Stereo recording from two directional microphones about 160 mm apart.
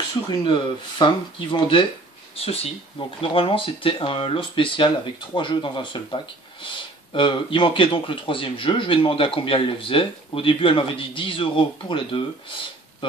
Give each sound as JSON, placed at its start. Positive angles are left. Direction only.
{"t": 0.3, "sound": "speech", "side_deg": 30}